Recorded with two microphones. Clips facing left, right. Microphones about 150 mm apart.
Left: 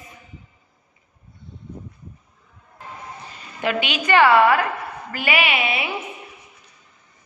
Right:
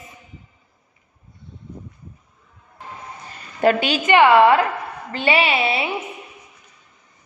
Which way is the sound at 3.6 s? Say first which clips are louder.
Right 6 dB; 40° right (ahead or behind).